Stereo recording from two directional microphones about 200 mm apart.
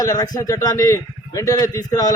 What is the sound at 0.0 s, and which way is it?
A man's voice, 15° left (ahead or behind).